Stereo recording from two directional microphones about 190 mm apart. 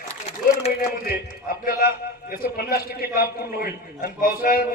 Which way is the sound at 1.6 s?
50° left (ahead or behind).